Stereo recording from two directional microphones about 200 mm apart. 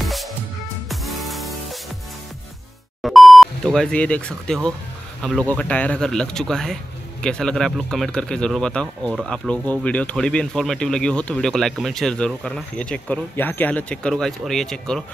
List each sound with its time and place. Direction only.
0.0 s music: centre (ahead or behind)
3.0 s a man's voice: centre (ahead or behind)